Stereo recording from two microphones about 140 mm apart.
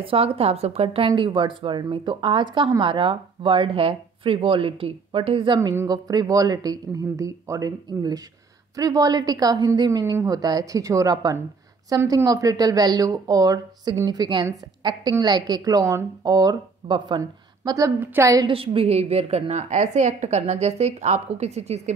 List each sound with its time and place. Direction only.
0.0 s speech: 40° right (ahead or behind)
5.6 s speech: 25° right (ahead or behind)
17.2 s a woman's voice: 25° right (ahead or behind)
18.5 s a woman's voice: 40° right (ahead or behind)